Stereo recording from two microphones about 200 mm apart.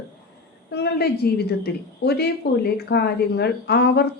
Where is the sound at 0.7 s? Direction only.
55° left (ahead or behind).